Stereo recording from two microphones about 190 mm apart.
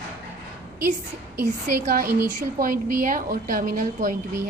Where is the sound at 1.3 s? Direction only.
50° right (ahead or behind).